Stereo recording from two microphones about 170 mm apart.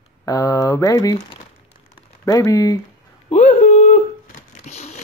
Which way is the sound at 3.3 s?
45° left (ahead or behind).